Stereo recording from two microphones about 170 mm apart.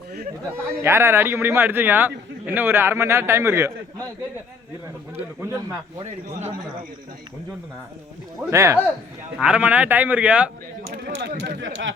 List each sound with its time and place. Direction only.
0.8 s a man's voice: 15° right (ahead or behind)
5.4 s a man's voice: 15° right (ahead or behind)
8.4 s a man's voice: 15° right (ahead or behind)
11.0 s speech: 75° right (ahead or behind); by 11.9 s 90° right